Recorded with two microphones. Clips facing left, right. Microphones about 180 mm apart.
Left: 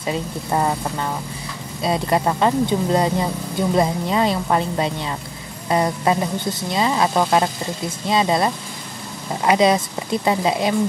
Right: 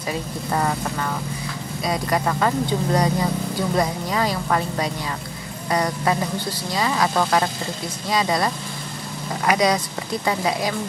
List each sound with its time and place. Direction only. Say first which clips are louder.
0.1 s speech: left 3 dB; 20° left (ahead or behind)